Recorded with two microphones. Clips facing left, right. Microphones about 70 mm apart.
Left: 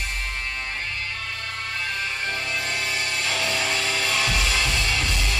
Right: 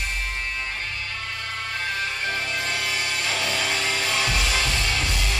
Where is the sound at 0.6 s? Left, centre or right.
Left.